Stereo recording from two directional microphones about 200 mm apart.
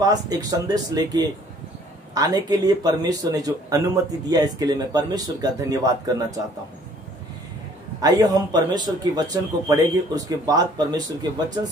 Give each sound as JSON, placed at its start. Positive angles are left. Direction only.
{"t": 0.0, "sound": "speech", "side_deg": -20}
{"t": 8.0, "sound": "speech", "side_deg": -20}